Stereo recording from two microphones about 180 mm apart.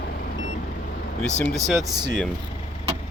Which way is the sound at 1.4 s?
Centre (ahead or behind).